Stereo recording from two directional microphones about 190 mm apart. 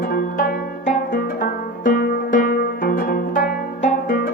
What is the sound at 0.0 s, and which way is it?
Music, 50° left (ahead or behind).